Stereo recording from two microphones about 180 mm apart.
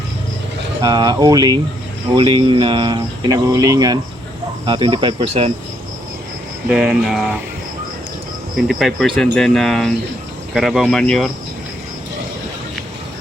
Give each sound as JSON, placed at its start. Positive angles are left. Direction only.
{"t": 0.8, "sound": "speech", "side_deg": -20}
{"t": 6.7, "sound": "speech", "side_deg": -5}
{"t": 8.5, "sound": "speech", "side_deg": 0}